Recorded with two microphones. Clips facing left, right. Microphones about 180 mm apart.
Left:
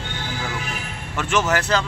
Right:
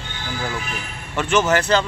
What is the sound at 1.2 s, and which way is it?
Speech, centre (ahead or behind).